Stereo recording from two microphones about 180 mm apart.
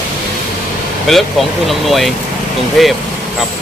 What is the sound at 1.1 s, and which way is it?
Speech, centre (ahead or behind).